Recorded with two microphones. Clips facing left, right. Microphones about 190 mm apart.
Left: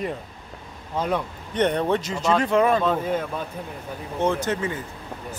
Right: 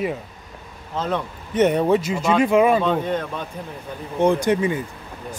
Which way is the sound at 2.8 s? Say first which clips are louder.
Right 2 dB; 5° left (ahead or behind).